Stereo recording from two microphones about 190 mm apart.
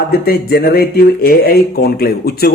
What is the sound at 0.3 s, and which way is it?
Speech, 55° left (ahead or behind).